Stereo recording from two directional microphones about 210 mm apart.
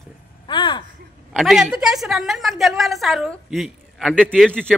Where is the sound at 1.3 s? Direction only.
Centre (ahead or behind).